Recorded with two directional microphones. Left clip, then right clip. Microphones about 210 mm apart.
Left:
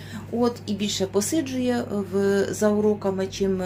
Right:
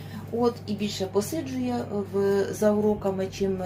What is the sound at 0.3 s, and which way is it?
Speech, 30° left (ahead or behind).